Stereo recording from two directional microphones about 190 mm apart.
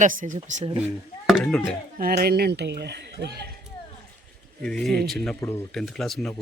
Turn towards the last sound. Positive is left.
turn(degrees=0)  # may be behind; listen again after turning